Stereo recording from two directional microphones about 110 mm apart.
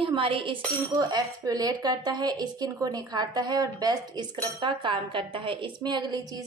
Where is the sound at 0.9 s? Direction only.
35° right (ahead or behind).